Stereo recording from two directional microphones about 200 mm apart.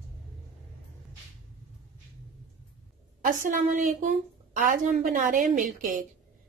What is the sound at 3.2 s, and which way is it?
A woman's voice, 40° right (ahead or behind).